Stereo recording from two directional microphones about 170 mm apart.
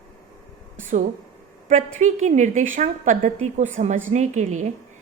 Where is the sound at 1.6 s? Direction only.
45° right (ahead or behind).